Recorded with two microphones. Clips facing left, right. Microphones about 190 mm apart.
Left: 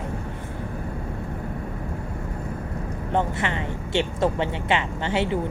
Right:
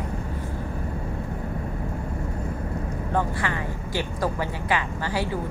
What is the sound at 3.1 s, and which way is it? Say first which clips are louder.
A woman's voice: left 2 dB; 25° left (ahead or behind).